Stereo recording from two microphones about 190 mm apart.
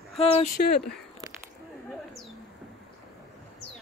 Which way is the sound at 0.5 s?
55° left (ahead or behind).